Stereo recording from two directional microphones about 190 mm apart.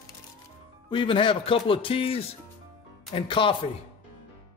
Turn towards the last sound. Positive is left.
turn(degrees=25)  # may be behind; listen again after turning